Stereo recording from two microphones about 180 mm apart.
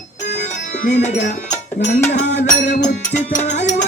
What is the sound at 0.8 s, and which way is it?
Music, 40° left (ahead or behind).